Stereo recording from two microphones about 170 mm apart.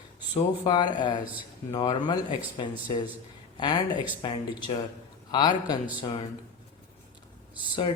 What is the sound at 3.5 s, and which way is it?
Speech, 30° left (ahead or behind).